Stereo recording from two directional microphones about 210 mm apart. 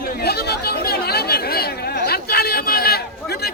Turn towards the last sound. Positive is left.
turn(degrees=45)  # may be behind; listen again after turning